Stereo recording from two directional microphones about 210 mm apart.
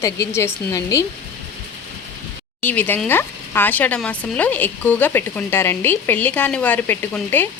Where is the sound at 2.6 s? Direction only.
10° left (ahead or behind).